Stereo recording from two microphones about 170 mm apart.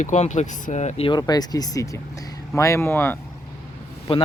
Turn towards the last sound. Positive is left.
turn(degrees=35)  # may be behind; listen again after turning